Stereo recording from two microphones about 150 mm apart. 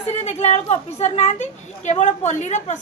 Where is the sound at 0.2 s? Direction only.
45° left (ahead or behind).